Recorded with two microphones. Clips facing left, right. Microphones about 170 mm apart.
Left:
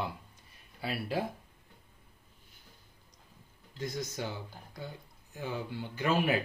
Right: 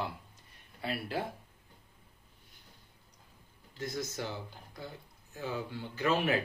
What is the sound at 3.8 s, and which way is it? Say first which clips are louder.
Speech: left 1 dB; 15° left (ahead or behind).